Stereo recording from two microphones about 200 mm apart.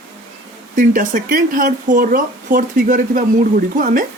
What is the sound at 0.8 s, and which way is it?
Speech, 40° right (ahead or behind).